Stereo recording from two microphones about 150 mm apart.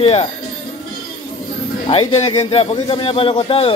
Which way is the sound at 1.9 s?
40° left (ahead or behind).